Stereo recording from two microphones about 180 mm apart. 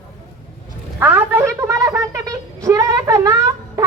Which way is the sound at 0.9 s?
10° right (ahead or behind).